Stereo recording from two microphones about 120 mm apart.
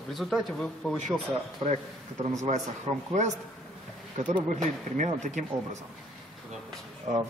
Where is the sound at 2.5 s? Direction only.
90° right.